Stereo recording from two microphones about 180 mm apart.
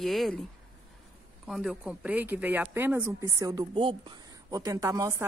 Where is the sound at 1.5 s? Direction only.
5° right (ahead or behind).